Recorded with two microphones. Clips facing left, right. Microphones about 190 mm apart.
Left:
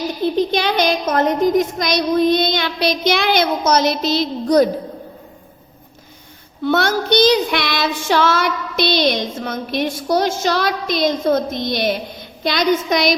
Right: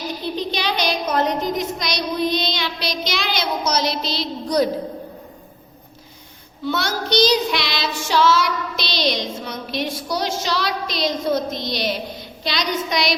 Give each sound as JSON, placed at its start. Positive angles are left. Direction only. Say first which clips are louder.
{"t": 0.3, "sound": "child singing", "louder": "left 6 dB", "side_deg": 50}
{"t": 6.7, "sound": "child singing", "louder": "left 6 dB", "side_deg": 55}